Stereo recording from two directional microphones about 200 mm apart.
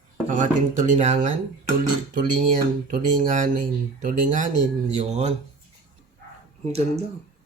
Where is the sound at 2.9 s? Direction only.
40° right (ahead or behind).